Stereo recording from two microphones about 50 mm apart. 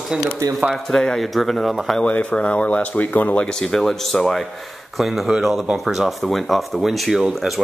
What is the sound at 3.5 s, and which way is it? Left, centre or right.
Speech, centre.